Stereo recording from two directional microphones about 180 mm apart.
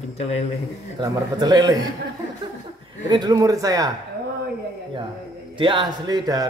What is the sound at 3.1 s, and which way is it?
Speech, 20° right (ahead or behind).